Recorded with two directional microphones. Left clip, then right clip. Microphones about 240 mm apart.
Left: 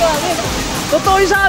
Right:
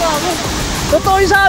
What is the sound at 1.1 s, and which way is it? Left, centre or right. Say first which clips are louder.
Speech: right 2 dB; centre.